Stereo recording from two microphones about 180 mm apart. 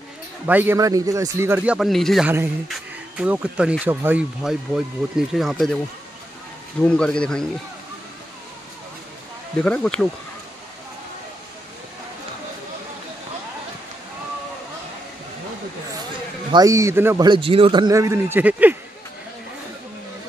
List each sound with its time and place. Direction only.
0.5 s a man's voice: 10° right (ahead or behind)
2.2 s a man's voice: 15° right (ahead or behind)
6.9 s speech: 5° left (ahead or behind)
9.6 s speech: 5° left (ahead or behind)
16.5 s a man's voice: 15° right (ahead or behind)
17.2 s a man's voice: 30° right (ahead or behind); by 18.8 s 10° right (ahead or behind)